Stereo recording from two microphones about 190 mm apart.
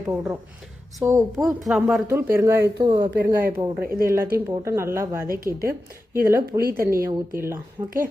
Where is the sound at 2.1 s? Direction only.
10° right (ahead or behind).